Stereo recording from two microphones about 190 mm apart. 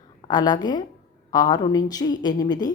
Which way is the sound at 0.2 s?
20° left (ahead or behind).